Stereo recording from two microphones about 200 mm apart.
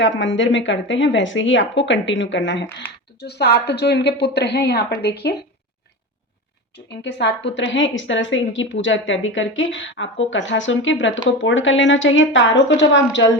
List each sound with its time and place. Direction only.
0.0 s speech: 65° left (ahead or behind)
3.2 s speech: 55° left (ahead or behind)
6.7 s a woman's voice: 60° left (ahead or behind)